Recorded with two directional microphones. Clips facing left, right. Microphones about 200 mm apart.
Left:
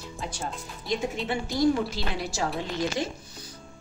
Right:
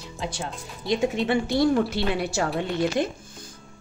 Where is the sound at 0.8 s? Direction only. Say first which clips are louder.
Right 6 dB; 75° right (ahead or behind).